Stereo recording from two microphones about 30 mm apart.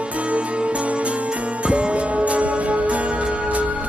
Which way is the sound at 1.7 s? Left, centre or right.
Right.